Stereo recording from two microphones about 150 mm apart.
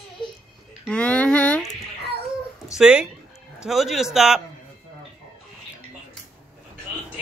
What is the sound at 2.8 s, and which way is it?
Speech, 5° right (ahead or behind).